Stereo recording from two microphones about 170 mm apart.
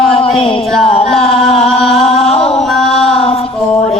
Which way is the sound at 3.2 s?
35° left (ahead or behind).